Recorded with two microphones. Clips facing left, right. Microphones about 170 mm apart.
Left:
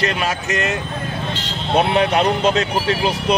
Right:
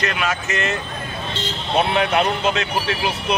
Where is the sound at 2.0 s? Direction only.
35° left (ahead or behind).